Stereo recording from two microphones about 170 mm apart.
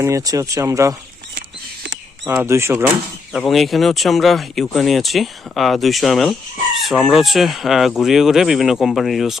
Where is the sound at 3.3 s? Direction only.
Centre (ahead or behind).